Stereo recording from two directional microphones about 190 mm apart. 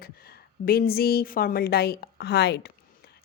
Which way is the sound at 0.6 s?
50° left (ahead or behind).